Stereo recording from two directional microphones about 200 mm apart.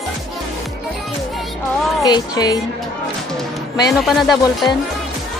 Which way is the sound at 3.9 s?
Centre (ahead or behind).